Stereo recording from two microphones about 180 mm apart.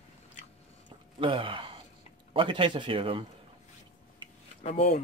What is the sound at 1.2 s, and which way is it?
Speech, 30° right (ahead or behind).